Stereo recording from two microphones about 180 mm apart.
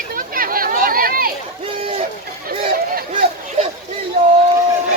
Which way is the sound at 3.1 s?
35° right (ahead or behind).